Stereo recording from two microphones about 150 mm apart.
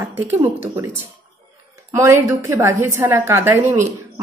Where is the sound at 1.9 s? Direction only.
20° right (ahead or behind).